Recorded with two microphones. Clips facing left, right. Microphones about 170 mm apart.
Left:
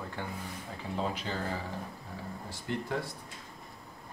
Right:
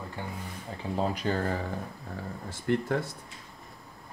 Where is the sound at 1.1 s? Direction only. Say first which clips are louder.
Right 7 dB; 50° right (ahead or behind).